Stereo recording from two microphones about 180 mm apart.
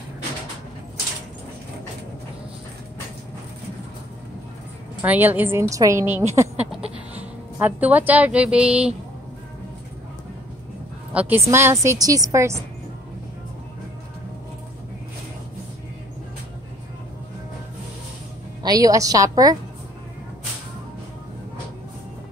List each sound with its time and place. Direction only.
5.0 s a woman's voice: 10° right (ahead or behind)
6.7 s a sound: 5° right (ahead or behind)
7.5 s a woman's voice: 10° right (ahead or behind)
11.1 s a woman's voice: 10° right (ahead or behind)
18.6 s a woman's voice: 20° right (ahead or behind)